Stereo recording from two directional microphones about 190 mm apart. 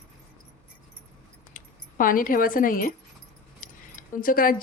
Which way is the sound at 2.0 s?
45° left (ahead or behind).